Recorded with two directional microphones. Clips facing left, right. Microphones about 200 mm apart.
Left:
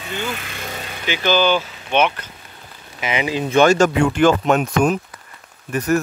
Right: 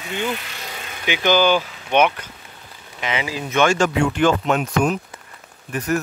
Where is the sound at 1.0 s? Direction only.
15° right (ahead or behind).